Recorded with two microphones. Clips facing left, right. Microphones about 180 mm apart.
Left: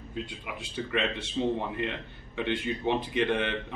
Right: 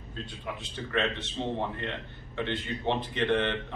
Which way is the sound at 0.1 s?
10° left (ahead or behind).